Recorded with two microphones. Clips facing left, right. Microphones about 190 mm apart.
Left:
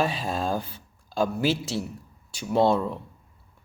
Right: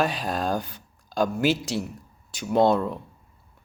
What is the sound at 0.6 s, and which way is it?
Speech, 30° left (ahead or behind).